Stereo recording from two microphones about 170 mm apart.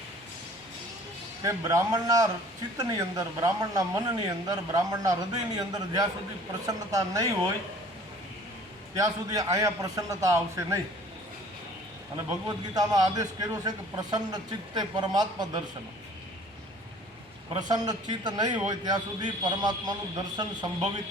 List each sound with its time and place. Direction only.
1.5 s a man's voice: 20° right (ahead or behind)
9.0 s a man's voice: 20° right (ahead or behind)
12.1 s a man's voice: 20° right (ahead or behind)
17.6 s a man's voice: 25° right (ahead or behind)